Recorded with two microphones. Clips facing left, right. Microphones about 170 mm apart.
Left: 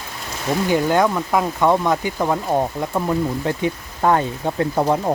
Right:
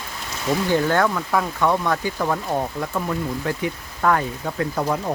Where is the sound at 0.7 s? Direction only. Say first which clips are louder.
Left 3 dB; 15° left (ahead or behind).